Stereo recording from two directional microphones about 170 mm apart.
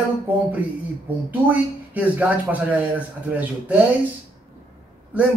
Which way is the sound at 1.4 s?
10° right (ahead or behind).